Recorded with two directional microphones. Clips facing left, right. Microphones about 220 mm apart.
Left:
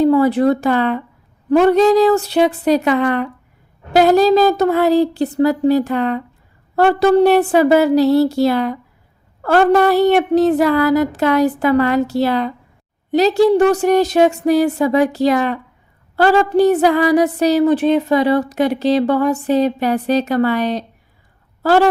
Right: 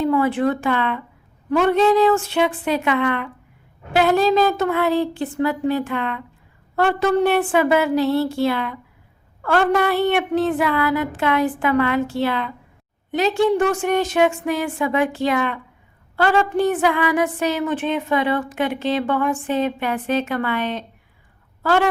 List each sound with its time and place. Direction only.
0.0 s speech: 40° left (ahead or behind)